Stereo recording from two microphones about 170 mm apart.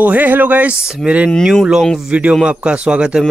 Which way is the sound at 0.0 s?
10° right (ahead or behind).